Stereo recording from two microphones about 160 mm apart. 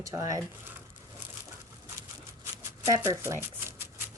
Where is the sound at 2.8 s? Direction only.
15° right (ahead or behind).